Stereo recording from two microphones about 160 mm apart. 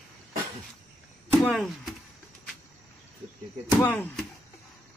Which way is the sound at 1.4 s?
Centre (ahead or behind).